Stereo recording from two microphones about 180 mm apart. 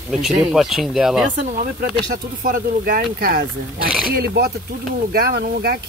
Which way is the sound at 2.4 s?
55° right (ahead or behind).